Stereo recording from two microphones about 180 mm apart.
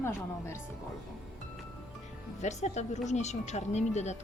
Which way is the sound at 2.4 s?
40° left (ahead or behind).